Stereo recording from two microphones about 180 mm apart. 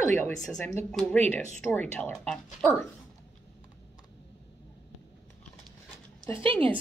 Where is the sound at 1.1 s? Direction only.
40° right (ahead or behind).